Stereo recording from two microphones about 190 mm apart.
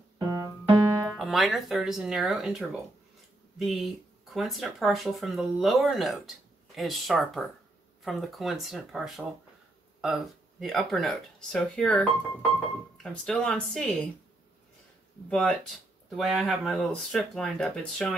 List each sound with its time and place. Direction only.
0.3 s music: 20° right (ahead or behind)
1.0 s speech: centre (ahead or behind)
15.2 s speech: centre (ahead or behind)